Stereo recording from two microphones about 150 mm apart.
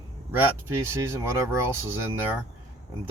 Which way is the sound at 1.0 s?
15° right (ahead or behind).